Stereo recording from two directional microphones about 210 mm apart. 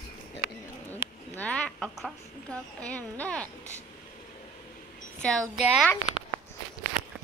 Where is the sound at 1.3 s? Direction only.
5° left (ahead or behind).